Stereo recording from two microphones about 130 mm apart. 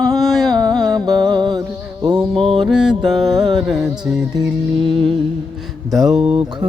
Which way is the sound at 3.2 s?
30° right (ahead or behind).